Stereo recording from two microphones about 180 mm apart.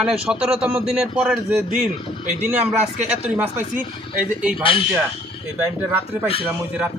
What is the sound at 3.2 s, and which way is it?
Speech, 10° right (ahead or behind).